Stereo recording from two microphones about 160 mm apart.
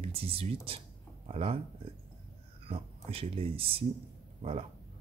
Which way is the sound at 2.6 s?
35° right (ahead or behind).